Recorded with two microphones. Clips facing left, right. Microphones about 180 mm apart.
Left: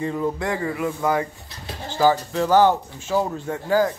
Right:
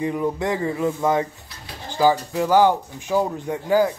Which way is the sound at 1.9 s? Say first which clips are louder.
Even; 15° right (ahead or behind).